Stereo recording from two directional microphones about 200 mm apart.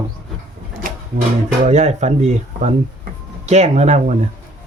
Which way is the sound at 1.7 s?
35° right (ahead or behind).